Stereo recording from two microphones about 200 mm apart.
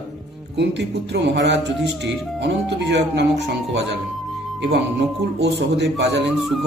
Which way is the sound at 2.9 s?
60° right (ahead or behind).